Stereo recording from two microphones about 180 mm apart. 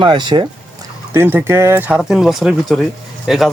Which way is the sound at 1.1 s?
10° right (ahead or behind).